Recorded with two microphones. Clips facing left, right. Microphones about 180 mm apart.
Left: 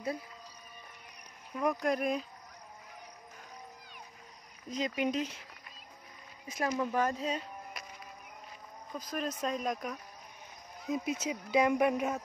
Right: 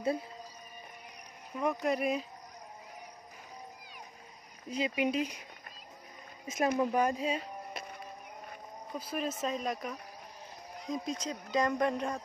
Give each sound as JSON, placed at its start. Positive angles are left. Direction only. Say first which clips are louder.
{"t": 1.5, "sound": "speech", "louder": "even", "side_deg": 0}
{"t": 4.6, "sound": "speech", "louder": "right 1 dB", "side_deg": -10}
{"t": 6.4, "sound": "speech", "louder": "right 3 dB", "side_deg": -20}
{"t": 8.9, "sound": "speech", "louder": "right 1 dB", "side_deg": -10}